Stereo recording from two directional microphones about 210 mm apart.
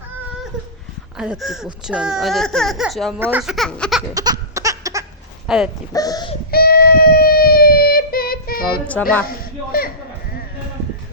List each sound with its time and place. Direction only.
1.1 s speech: 5° right (ahead or behind)
4.1 s a sound: 20° right (ahead or behind)
5.5 s speech: centre (ahead or behind)
5.9 s speech: 15° left (ahead or behind)
6.5 s child singing: 45° left (ahead or behind)
9.7 s bleat: 45° left (ahead or behind)